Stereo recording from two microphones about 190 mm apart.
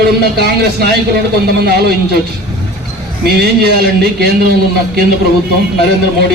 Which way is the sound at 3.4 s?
55° right (ahead or behind).